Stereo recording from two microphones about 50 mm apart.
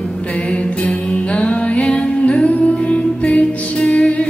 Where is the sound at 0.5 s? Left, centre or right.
Left.